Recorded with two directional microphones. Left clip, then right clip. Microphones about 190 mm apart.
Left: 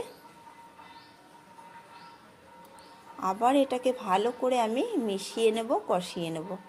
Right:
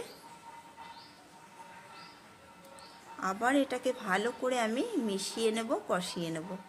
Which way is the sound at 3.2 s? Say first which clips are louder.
Left 5 dB; 5° left (ahead or behind).